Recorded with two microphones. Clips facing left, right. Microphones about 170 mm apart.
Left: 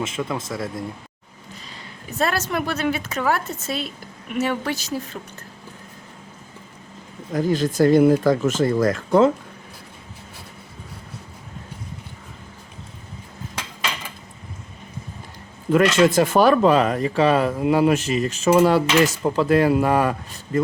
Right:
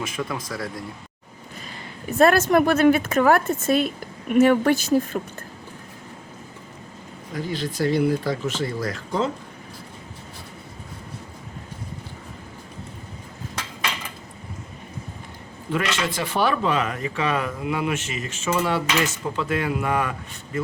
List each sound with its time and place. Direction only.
0.0 s speech: 25° left (ahead or behind)
2.1 s a woman's voice: 50° right (ahead or behind)
7.3 s speech: 45° left (ahead or behind)
16.0 s speech: 45° left (ahead or behind)